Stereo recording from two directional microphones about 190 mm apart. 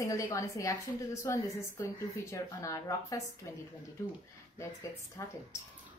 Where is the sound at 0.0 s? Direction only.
15° left (ahead or behind).